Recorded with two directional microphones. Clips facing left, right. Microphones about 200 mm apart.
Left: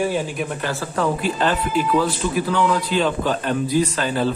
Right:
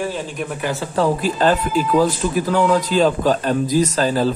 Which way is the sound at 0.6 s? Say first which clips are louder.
Right 2 dB; 15° right (ahead or behind).